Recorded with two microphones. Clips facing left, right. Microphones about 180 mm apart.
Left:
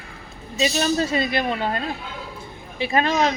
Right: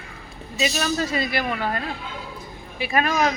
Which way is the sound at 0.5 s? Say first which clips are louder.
Left 3 dB; 30° left (ahead or behind).